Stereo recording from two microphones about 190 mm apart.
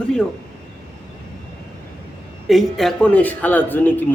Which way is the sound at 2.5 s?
Centre (ahead or behind).